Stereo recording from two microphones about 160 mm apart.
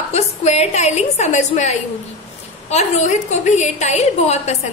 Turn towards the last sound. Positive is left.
turn(degrees=45)  # may be behind; listen again after turning